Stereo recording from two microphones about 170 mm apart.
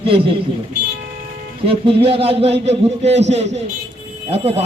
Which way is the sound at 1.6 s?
35° right (ahead or behind).